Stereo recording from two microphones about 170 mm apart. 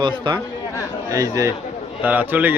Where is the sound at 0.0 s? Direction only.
25° right (ahead or behind).